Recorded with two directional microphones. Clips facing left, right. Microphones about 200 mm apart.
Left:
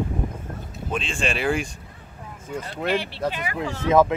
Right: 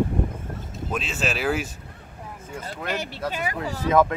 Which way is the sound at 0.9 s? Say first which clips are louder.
Left 1 dB; 5° right (ahead or behind).